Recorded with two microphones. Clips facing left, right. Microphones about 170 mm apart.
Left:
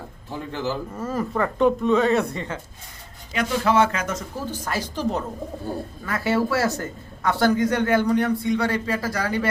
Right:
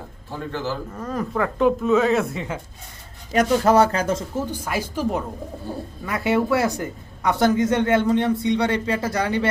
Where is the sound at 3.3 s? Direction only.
45° right (ahead or behind).